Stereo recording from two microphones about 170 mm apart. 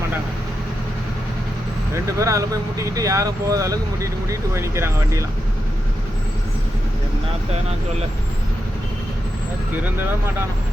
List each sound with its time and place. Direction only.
2.1 s speech: 20° right (ahead or behind)